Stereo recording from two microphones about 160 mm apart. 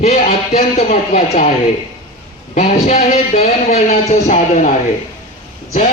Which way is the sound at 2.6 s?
40° left (ahead or behind).